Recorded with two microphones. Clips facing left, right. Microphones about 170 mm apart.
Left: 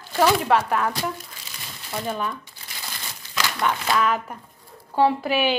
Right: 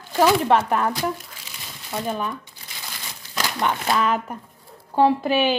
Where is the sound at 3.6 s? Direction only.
20° right (ahead or behind).